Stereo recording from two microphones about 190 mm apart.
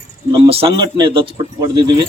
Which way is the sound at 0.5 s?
25° right (ahead or behind).